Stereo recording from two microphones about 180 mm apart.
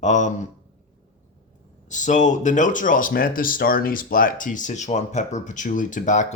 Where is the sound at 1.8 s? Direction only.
45° left (ahead or behind).